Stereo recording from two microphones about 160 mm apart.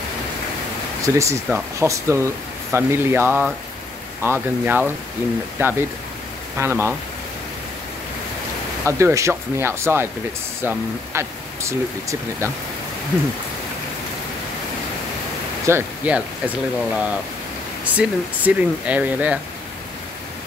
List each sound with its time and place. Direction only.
1.0 s speech: 20° right (ahead or behind)
8.8 s speech: 20° right (ahead or behind)
15.6 s speech: 15° right (ahead or behind)